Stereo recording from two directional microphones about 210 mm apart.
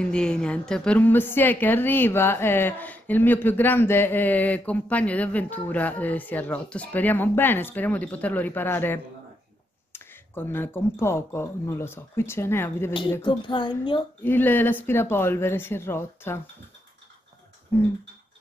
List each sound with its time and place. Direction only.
0.0 s a woman's voice: 5° left (ahead or behind)
13.1 s speech: 20° left (ahead or behind)
14.2 s a woman's voice: 10° left (ahead or behind)
17.7 s a sound: 10° left (ahead or behind)